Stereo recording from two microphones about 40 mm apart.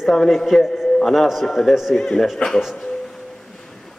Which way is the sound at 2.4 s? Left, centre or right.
Left.